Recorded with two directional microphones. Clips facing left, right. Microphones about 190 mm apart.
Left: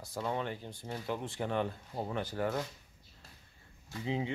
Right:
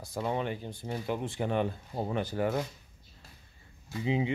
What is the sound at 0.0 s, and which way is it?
Speech, 15° right (ahead or behind).